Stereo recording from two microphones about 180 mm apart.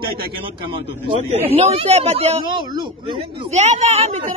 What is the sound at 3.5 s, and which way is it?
Speech, 40° right (ahead or behind).